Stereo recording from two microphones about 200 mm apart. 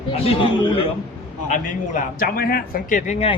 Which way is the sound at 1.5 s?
40° left (ahead or behind).